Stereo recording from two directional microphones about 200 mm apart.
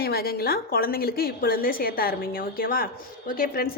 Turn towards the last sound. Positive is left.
turn(degrees=45)  # may be behind; listen again after turning